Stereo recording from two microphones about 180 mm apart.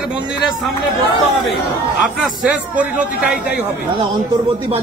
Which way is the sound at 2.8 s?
10° right (ahead or behind).